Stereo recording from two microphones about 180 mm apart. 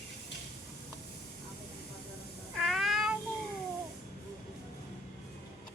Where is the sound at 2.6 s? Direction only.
Centre (ahead or behind).